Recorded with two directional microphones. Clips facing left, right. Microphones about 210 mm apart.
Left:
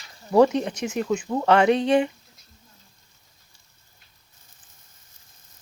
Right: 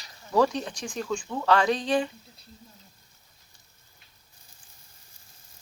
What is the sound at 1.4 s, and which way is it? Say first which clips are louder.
Speech: left 4 dB; 25° left (ahead or behind).